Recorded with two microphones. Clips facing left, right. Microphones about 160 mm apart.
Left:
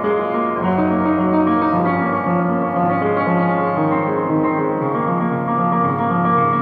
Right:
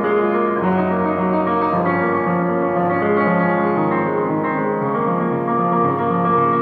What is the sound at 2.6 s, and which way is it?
Music, 15° left (ahead or behind).